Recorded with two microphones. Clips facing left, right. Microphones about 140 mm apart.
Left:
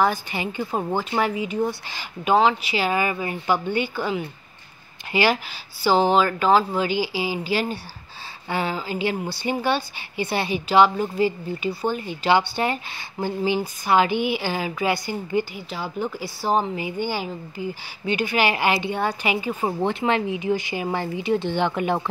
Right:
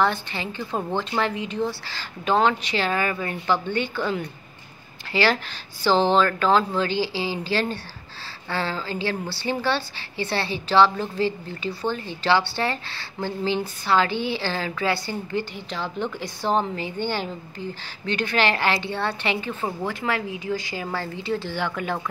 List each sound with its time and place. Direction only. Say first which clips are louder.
0.0 s speech: left 1 dB; 10° left (ahead or behind)
19.6 s speech: left 4 dB; 20° left (ahead or behind)